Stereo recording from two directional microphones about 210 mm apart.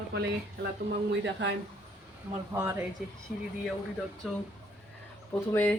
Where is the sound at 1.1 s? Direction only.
60° right (ahead or behind).